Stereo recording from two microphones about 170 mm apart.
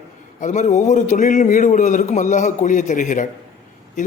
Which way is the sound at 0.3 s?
45° left (ahead or behind).